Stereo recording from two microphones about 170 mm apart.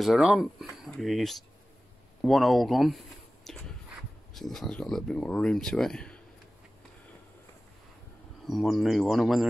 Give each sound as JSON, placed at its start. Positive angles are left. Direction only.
{"t": 0.0, "sound": "speech", "side_deg": 0}
{"t": 3.4, "sound": "a sound", "side_deg": 5}
{"t": 4.3, "sound": "speech", "side_deg": 0}
{"t": 8.5, "sound": "speech", "side_deg": 0}